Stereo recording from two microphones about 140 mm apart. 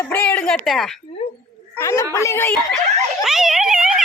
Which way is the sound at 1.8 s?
20° left (ahead or behind).